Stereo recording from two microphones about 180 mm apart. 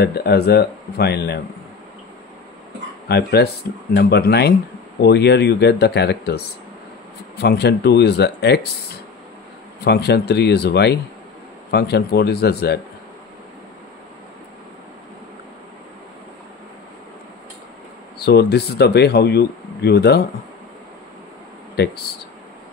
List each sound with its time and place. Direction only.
0.0 s speech: 60° left (ahead or behind)
3.1 s speech: 65° left (ahead or behind)
9.8 s speech: 65° left (ahead or behind)
18.2 s speech: 65° left (ahead or behind)
21.8 s speech: 65° left (ahead or behind)